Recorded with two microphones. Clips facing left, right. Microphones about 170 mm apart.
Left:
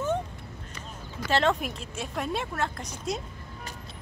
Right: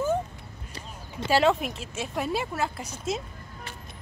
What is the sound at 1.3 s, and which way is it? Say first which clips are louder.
A woman's voice: right 3 dB; 5° right (ahead or behind).